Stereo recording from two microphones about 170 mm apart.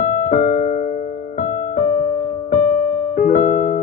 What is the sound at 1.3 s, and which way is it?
Music, 45° left (ahead or behind).